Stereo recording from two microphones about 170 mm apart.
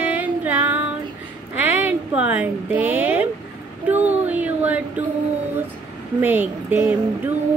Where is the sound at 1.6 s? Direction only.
10° right (ahead or behind).